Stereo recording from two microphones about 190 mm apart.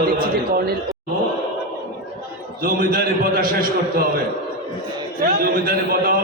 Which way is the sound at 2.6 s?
50° right (ahead or behind).